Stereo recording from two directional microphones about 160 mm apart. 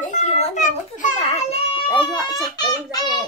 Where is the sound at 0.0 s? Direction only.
50° left (ahead or behind).